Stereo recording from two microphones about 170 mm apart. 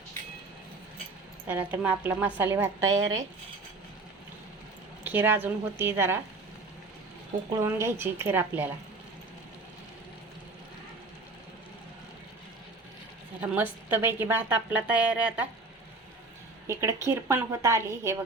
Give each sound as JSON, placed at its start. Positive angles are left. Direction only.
{"t": 1.5, "sound": "a woman's voice", "side_deg": -10}
{"t": 5.0, "sound": "a woman's voice", "side_deg": -10}
{"t": 7.6, "sound": "a woman's voice", "side_deg": -15}
{"t": 13.4, "sound": "a woman's voice", "side_deg": -10}
{"t": 17.1, "sound": "a woman's voice", "side_deg": -15}